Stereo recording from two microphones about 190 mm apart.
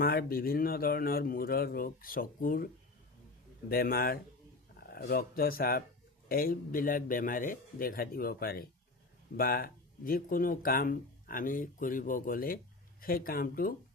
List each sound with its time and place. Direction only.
0.0 s speech: 55° left (ahead or behind)
3.7 s speech: 50° left (ahead or behind)